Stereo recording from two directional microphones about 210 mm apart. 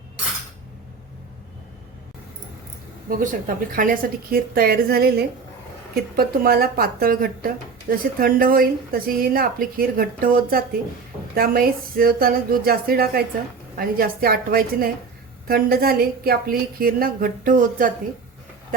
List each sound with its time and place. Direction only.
3.1 s speech: 40° right (ahead or behind)